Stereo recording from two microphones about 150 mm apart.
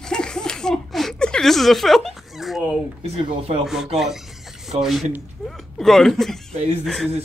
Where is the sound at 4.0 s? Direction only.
Centre (ahead or behind).